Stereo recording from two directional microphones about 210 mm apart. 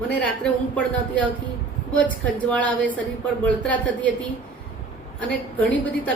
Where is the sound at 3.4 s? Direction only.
5° left (ahead or behind).